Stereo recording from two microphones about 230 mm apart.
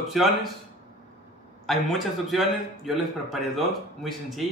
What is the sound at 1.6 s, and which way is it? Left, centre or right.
A man's voice, centre.